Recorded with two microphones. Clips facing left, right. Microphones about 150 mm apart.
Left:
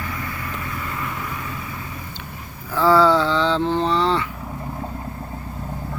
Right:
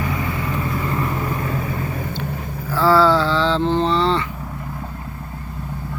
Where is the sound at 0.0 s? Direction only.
25° right (ahead or behind); by 2.5 s 55° right (ahead or behind).